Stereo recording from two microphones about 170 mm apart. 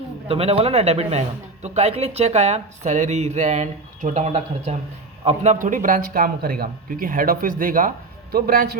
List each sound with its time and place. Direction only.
0.3 s a man's voice: 35° right (ahead or behind); by 8.8 s 60° right (ahead or behind)